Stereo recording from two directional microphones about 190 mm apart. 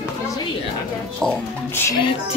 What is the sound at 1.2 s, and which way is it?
Speech, 10° left (ahead or behind).